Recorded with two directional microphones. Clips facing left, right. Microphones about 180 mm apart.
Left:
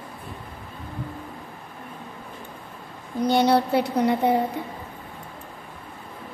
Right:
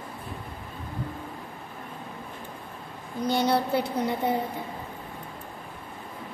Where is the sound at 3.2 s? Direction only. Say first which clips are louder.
Left 5 dB; 70° left (ahead or behind).